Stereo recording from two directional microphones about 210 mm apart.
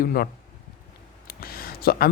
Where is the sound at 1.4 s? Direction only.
45° left (ahead or behind).